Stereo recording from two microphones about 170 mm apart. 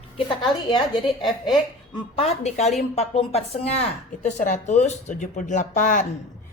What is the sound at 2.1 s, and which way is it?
A woman's voice, 40° left (ahead or behind).